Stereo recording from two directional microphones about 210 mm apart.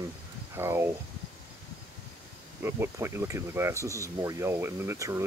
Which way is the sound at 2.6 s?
10° right (ahead or behind).